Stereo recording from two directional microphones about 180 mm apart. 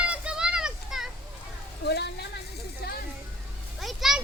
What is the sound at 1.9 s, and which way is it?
Speech, 65° left (ahead or behind).